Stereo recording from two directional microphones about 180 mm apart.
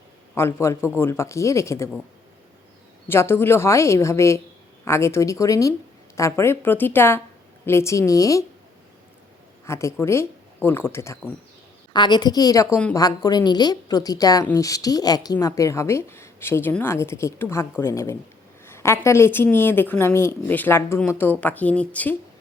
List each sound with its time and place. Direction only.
0.3 s speech: 15° left (ahead or behind)
3.1 s speech: 15° left (ahead or behind)
9.6 s a woman's voice: 15° left (ahead or behind)